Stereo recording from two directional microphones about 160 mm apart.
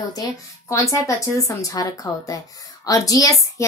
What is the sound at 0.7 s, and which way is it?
A woman's voice, 20° left (ahead or behind).